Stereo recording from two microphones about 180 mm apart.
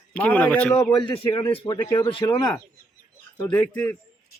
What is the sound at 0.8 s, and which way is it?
Speech, 25° left (ahead or behind).